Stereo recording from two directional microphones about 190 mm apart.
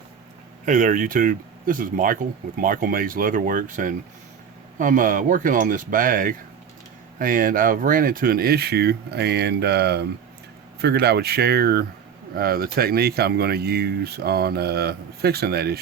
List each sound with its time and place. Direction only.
0.6 s speech: 40° right (ahead or behind)